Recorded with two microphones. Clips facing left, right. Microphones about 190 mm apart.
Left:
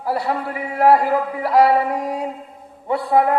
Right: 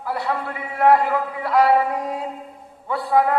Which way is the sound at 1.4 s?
30° left (ahead or behind).